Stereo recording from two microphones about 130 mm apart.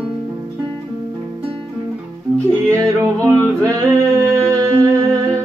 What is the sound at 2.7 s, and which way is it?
Music, 20° right (ahead or behind).